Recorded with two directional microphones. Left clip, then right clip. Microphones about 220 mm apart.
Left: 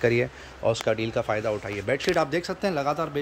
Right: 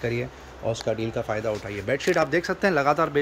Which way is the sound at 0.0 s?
20° left (ahead or behind).